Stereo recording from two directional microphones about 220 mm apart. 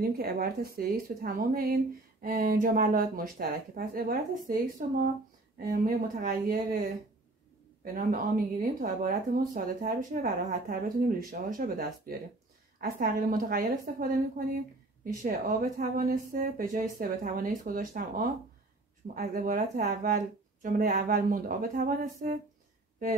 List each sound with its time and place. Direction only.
0.2 s speech: 45° right (ahead or behind)